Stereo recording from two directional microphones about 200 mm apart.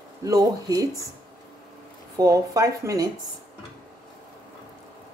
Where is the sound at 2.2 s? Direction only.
15° right (ahead or behind).